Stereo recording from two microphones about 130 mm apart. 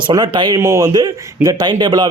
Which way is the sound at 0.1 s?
35° right (ahead or behind).